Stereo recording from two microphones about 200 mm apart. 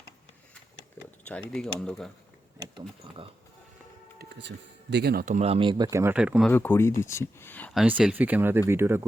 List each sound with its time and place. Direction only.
1.3 s speech: 5° left (ahead or behind)
4.2 s speech: 60° right (ahead or behind); by 6.5 s 5° right (ahead or behind)
6.5 s speech: 10° left (ahead or behind)
7.8 s speech: 5° right (ahead or behind)